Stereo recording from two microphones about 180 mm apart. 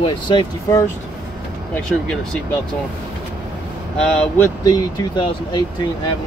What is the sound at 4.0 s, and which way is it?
Speech, 15° left (ahead or behind).